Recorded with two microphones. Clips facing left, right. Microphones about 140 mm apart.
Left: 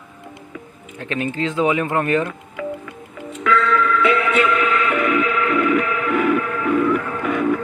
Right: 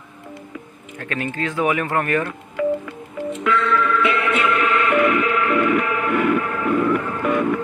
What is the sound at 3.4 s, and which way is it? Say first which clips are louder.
Music: left 2 dB; centre (ahead or behind).